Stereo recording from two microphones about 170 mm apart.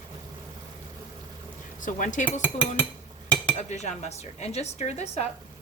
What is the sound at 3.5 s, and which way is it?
Cutlery, 40° left (ahead or behind).